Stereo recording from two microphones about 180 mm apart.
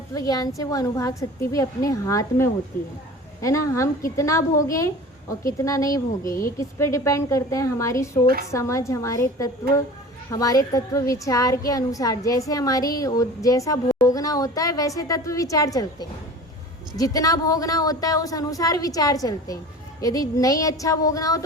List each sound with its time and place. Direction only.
0.1 s a woman's voice: 20° left (ahead or behind)
5.5 s a woman's voice: 20° left (ahead or behind)